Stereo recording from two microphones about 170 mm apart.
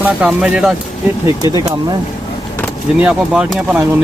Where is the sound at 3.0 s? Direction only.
5° right (ahead or behind).